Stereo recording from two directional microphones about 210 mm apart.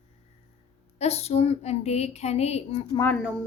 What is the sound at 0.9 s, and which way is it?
Speech, 30° left (ahead or behind).